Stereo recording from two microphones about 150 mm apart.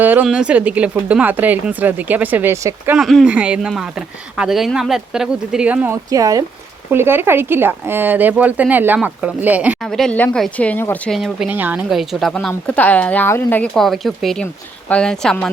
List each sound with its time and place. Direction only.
0.0 s speech: 10° right (ahead or behind)
3.0 s speech: centre (ahead or behind)
6.1 s speech: 25° right (ahead or behind)
9.9 s speech: 5° left (ahead or behind)
11.2 s speech: 5° right (ahead or behind); by 13.7 s 15° left (ahead or behind)
13.7 s speech: centre (ahead or behind)